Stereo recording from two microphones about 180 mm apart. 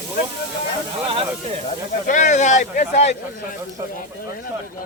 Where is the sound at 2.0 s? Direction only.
45° left (ahead or behind).